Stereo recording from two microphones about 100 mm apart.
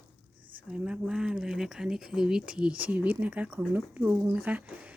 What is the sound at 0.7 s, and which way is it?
Speech, 10° right (ahead or behind).